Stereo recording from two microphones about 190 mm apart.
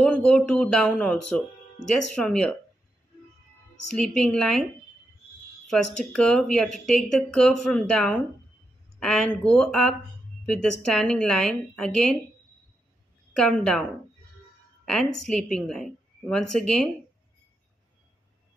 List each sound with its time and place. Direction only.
0.0 s a woman's voice: 5° left (ahead or behind)
3.9 s a woman's voice: 5° left (ahead or behind)
5.7 s a woman's voice: 5° left (ahead or behind)
13.3 s a woman's voice: 5° left (ahead or behind)
14.9 s a woman's voice: 5° left (ahead or behind)